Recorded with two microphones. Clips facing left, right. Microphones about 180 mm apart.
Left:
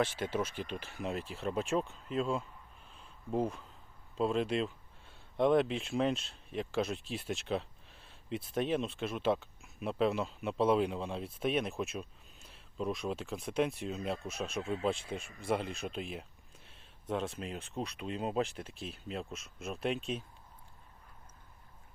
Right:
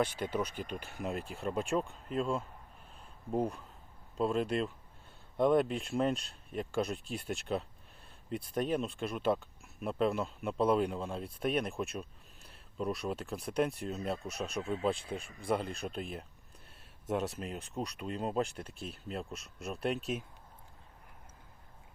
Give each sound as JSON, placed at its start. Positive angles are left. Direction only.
{"t": 0.5, "sound": "speech", "side_deg": -45}
{"t": 0.8, "sound": "speech", "side_deg": 0}
{"t": 8.7, "sound": "speech", "side_deg": 0}